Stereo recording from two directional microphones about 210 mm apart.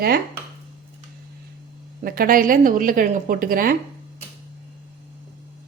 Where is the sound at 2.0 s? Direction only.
45° right (ahead or behind).